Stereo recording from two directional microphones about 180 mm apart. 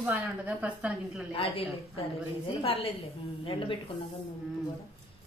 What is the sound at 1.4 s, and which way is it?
Speech, 30° left (ahead or behind).